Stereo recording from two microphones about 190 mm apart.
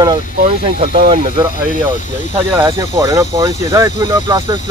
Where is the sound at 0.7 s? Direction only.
30° right (ahead or behind).